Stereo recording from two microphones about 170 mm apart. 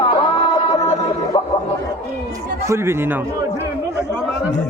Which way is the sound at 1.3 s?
25° left (ahead or behind).